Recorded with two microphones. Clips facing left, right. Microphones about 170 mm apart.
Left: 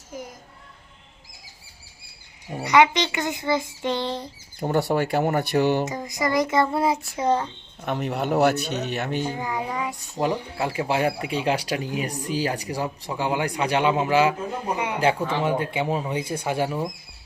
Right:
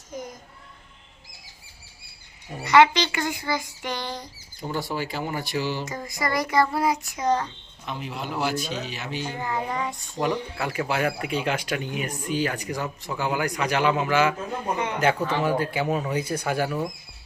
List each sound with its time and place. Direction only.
2.6 s child singing: 15° left (ahead or behind)
4.6 s speech: 65° left (ahead or behind)
5.8 s child singing: 20° left (ahead or behind)
7.8 s speech: 65° left (ahead or behind)
9.2 s speech: 15° left (ahead or behind)
10.2 s speech: 30° left (ahead or behind)
15.4 s child singing: 25° left (ahead or behind)